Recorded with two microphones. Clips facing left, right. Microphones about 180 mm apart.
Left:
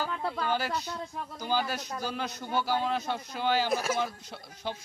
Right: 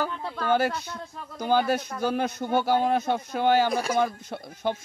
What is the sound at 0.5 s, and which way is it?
Speech, 50° right (ahead or behind).